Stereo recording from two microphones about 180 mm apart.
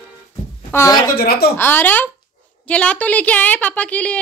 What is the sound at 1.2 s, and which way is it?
Speech, 55° left (ahead or behind).